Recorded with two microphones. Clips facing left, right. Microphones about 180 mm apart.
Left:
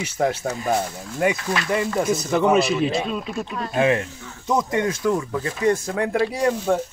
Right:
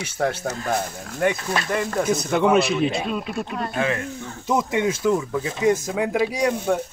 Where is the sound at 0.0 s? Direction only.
10° left (ahead or behind).